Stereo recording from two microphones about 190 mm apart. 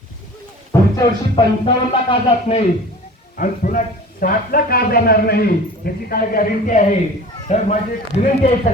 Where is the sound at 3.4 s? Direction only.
45° left (ahead or behind).